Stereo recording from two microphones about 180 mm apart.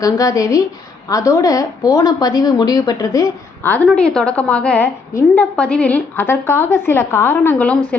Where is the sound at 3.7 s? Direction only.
5° left (ahead or behind).